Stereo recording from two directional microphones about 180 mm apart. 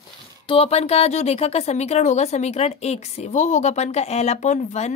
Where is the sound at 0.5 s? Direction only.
35° left (ahead or behind).